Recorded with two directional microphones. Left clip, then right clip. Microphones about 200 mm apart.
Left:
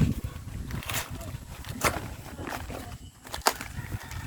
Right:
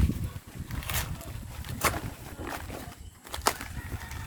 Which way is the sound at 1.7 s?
5° right (ahead or behind).